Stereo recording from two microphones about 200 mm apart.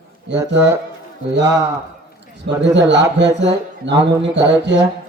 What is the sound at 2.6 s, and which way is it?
A man's voice, 60° right (ahead or behind).